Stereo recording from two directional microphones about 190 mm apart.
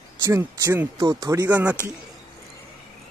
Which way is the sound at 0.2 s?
15° right (ahead or behind).